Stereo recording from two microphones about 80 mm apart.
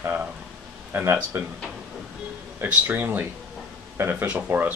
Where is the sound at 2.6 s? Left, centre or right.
Right.